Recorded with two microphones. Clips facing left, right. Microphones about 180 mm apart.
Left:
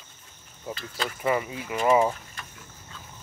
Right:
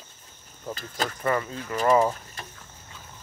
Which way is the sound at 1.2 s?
10° left (ahead or behind).